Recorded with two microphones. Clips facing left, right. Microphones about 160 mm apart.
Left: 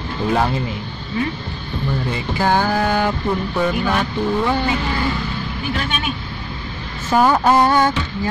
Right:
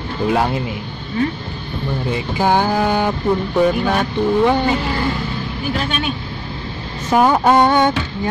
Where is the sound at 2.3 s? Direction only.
15° right (ahead or behind).